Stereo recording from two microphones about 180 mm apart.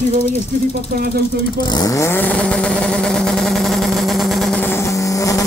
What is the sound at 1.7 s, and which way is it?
Vehicle, 20° left (ahead or behind).